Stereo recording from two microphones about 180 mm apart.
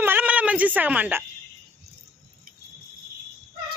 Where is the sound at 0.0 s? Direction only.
10° right (ahead or behind).